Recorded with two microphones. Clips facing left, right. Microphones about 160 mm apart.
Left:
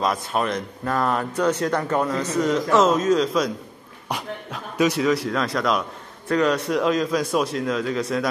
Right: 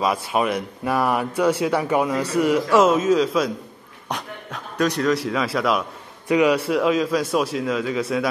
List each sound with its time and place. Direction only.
0.0 s speech: 5° right (ahead or behind)